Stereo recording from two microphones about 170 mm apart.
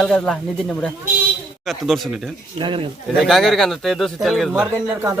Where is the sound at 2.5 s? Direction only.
30° right (ahead or behind).